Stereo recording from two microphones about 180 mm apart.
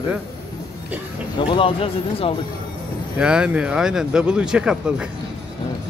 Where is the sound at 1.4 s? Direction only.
30° left (ahead or behind).